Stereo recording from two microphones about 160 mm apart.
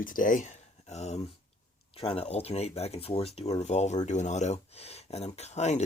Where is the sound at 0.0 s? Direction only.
55° left (ahead or behind).